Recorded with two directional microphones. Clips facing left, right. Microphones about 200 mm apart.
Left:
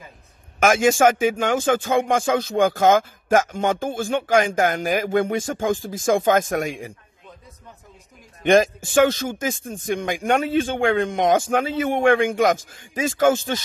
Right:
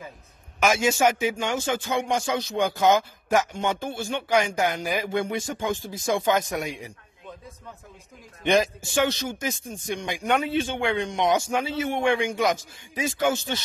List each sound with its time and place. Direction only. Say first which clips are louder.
0.6 s speech: left 5 dB; 50° left (ahead or behind)
8.9 s speech: left 7 dB; 50° left (ahead or behind)